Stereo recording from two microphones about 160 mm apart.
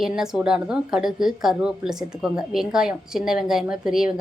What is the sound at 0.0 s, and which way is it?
A woman's voice, 5° right (ahead or behind).